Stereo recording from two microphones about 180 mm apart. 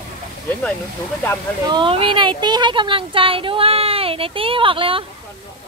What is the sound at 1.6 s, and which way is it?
Speech, 25° right (ahead or behind).